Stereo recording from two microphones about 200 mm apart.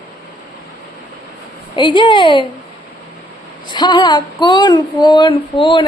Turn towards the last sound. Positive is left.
turn(degrees=25)  # may be behind; listen again after turning